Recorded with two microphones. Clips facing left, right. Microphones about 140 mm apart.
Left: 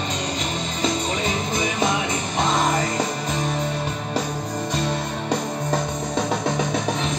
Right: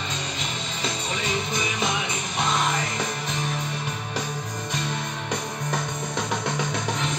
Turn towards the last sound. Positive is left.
turn(degrees=25)  # may be behind; listen again after turning